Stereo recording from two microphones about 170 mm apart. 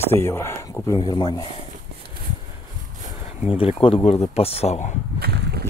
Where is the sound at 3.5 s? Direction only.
30° left (ahead or behind).